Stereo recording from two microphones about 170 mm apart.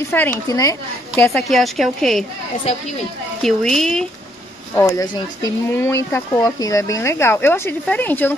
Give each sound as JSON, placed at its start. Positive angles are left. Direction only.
{"t": 0.1, "sound": "speech", "side_deg": 10}
{"t": 1.3, "sound": "speech", "side_deg": 0}
{"t": 3.4, "sound": "speech", "side_deg": 5}
{"t": 4.7, "sound": "speech", "side_deg": 15}